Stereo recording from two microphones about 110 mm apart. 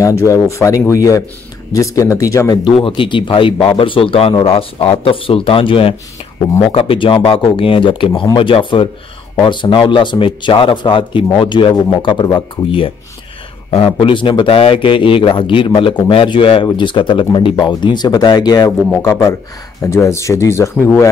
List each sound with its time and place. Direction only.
0.0 s speech: 30° left (ahead or behind)
2.6 s speech: 50° left (ahead or behind)
19.0 s speech: 30° left (ahead or behind)